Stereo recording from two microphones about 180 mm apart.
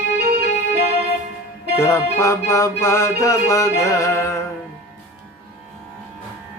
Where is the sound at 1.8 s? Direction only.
15° left (ahead or behind).